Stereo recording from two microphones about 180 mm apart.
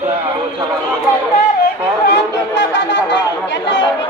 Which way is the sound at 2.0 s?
75° left (ahead or behind).